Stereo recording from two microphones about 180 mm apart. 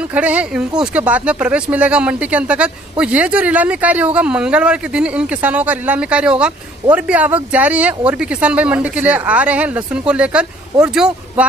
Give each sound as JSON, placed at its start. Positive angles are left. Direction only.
{"t": 0.1, "sound": "speech", "side_deg": -10}